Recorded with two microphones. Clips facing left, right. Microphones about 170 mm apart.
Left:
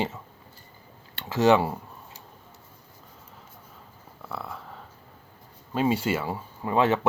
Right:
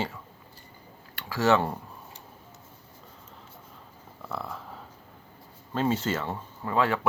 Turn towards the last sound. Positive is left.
turn(degrees=20)  # may be behind; listen again after turning